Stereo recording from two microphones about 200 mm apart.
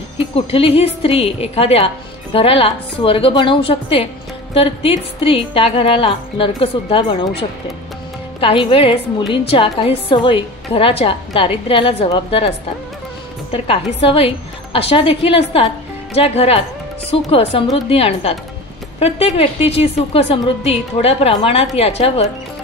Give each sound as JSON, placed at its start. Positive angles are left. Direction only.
{"t": 0.5, "sound": "a woman's voice", "side_deg": 30}